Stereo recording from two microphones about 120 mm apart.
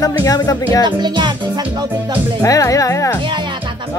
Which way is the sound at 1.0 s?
40° right (ahead or behind).